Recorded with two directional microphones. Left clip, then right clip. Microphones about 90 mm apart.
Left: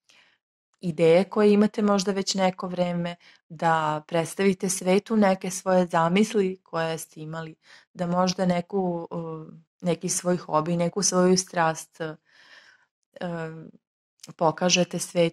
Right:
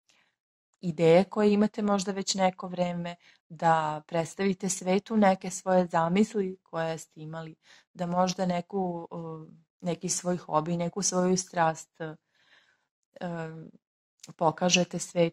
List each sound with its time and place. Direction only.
0.7 s speech: 30° left (ahead or behind)